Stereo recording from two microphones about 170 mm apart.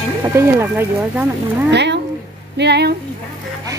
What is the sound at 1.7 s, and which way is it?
Speech, 90° right.